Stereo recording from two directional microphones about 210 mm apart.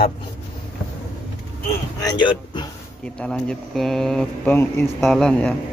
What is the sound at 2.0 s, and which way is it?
Speech, 20° left (ahead or behind).